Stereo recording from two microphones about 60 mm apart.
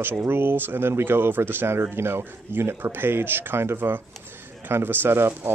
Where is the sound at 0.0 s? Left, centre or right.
Right.